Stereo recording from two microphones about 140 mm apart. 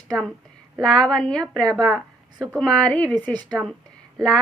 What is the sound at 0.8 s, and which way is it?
A woman's voice, 5° left (ahead or behind).